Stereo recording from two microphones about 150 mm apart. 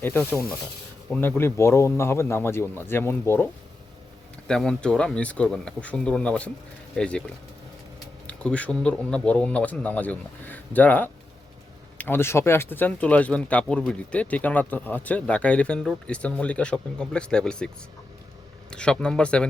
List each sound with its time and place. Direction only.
0.0 s speech: 15° left (ahead or behind)
4.4 s speech: 5° left (ahead or behind)
18.7 s speech: 5° left (ahead or behind)